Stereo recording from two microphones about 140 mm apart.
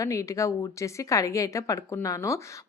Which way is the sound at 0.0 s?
25° left (ahead or behind).